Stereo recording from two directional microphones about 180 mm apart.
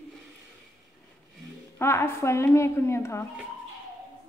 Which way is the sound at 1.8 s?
15° left (ahead or behind).